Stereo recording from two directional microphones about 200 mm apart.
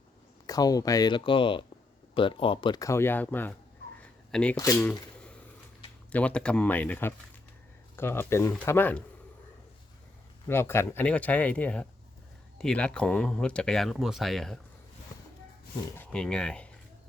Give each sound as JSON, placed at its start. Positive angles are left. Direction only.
{"t": 0.4, "sound": "speech", "side_deg": 20}
{"t": 4.0, "sound": "a sound", "side_deg": 5}
{"t": 4.5, "sound": "speech", "side_deg": 15}
{"t": 6.1, "sound": "speech", "side_deg": 5}
{"t": 10.4, "sound": "speech", "side_deg": 10}
{"t": 16.0, "sound": "speech", "side_deg": 5}